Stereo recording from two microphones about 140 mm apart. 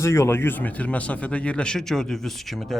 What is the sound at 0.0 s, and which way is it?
A man's voice, 20° left (ahead or behind).